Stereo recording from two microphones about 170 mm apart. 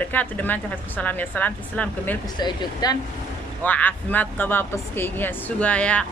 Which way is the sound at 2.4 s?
25° left (ahead or behind).